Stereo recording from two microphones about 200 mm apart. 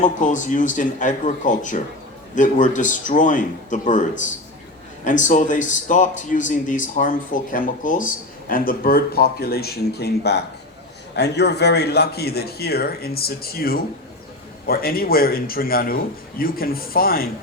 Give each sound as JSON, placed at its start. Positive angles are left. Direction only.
{"t": 0.0, "sound": "a man's voice", "side_deg": 40}